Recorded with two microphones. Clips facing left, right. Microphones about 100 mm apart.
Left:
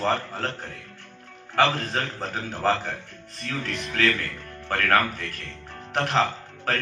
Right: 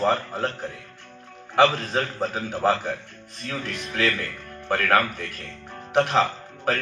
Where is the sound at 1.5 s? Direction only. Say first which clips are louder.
Right 3 dB; 10° right (ahead or behind).